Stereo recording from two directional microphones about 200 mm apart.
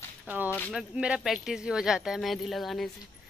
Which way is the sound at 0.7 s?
5° right (ahead or behind).